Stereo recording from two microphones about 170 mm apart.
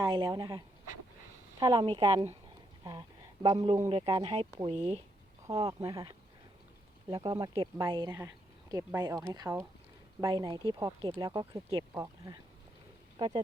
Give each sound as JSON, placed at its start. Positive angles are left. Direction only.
{"t": 0.0, "sound": "speech", "side_deg": -25}
{"t": 5.5, "sound": "speech", "side_deg": -20}